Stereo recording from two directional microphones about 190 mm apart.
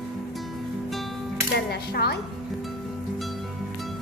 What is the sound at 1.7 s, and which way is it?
Speech, 55° left (ahead or behind).